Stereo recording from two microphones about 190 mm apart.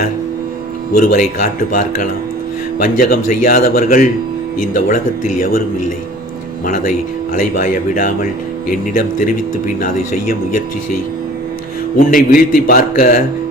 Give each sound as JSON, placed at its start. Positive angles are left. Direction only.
{"t": 0.9, "sound": "a man's voice", "side_deg": 45}
{"t": 6.7, "sound": "a man's voice", "side_deg": 40}
{"t": 11.9, "sound": "a man's voice", "side_deg": 45}